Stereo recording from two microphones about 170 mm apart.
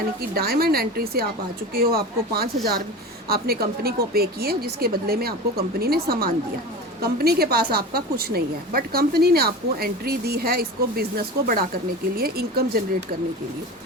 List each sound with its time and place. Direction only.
0.2 s a woman's voice: 65° right (ahead or behind)
12.1 s a woman's voice: 65° right (ahead or behind)